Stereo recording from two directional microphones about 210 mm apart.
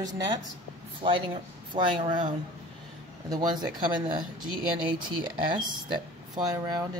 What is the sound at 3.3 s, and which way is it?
Speech, 20° right (ahead or behind).